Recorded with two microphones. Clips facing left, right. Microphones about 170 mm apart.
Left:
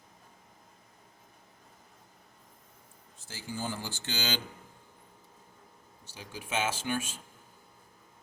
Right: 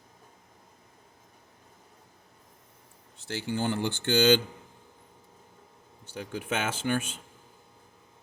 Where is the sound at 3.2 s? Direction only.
70° right (ahead or behind).